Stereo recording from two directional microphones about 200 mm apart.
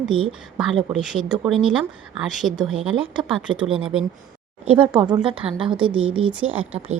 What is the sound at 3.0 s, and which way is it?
Speech, 25° right (ahead or behind).